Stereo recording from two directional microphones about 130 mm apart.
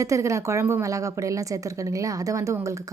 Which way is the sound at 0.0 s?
25° right (ahead or behind).